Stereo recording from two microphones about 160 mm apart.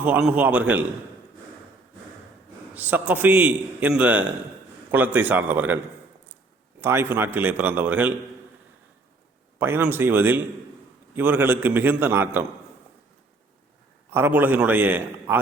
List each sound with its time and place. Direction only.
0.0 s a man's voice: 5° right (ahead or behind)
2.7 s a man's voice: 10° right (ahead or behind)
6.8 s a man's voice: 15° right (ahead or behind)
9.6 s a man's voice: 15° right (ahead or behind)
14.1 s a man's voice: 15° right (ahead or behind)